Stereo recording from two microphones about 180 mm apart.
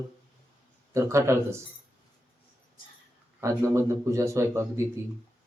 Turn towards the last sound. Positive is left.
turn(degrees=-15)  # may be behind; listen again after turning